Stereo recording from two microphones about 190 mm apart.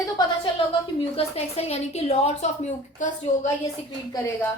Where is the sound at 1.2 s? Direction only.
35° left (ahead or behind).